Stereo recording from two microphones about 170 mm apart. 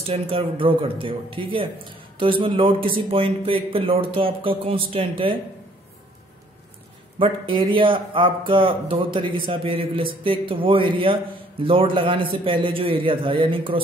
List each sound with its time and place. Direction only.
0.0 s speech: 35° right (ahead or behind)
7.2 s speech: 30° right (ahead or behind)